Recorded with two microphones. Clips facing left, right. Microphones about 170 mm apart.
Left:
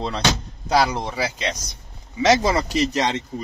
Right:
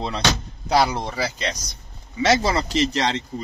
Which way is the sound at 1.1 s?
15° left (ahead or behind).